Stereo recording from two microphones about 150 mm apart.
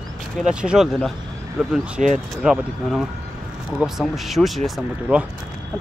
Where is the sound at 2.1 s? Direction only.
5° right (ahead or behind).